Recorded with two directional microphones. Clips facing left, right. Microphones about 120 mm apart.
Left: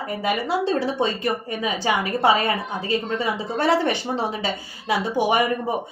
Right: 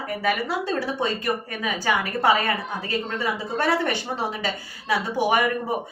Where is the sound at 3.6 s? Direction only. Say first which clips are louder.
Left 3 dB; 20° left (ahead or behind).